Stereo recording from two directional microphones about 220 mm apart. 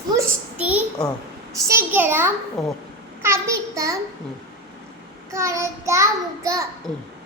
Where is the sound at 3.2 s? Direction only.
10° right (ahead or behind).